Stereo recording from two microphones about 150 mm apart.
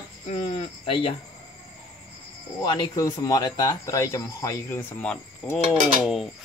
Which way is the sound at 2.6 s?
30° left (ahead or behind).